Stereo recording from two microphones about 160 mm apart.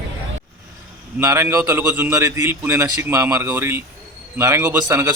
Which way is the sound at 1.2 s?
15° right (ahead or behind).